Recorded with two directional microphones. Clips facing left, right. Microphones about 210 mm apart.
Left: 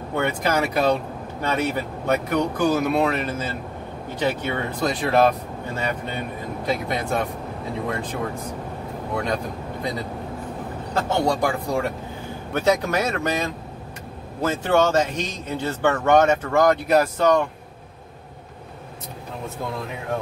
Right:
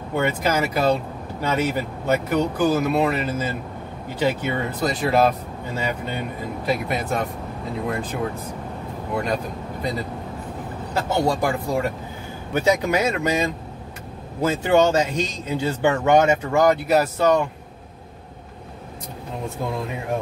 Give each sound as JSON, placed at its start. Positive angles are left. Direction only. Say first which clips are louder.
{"t": 0.1, "sound": "speech", "louder": "right 1 dB", "side_deg": -5}
{"t": 6.6, "sound": "speech", "louder": "right 1 dB", "side_deg": -5}
{"t": 11.0, "sound": "speech", "louder": "even", "side_deg": -5}